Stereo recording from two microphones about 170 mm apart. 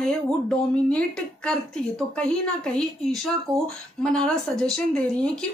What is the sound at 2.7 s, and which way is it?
Speech, centre (ahead or behind).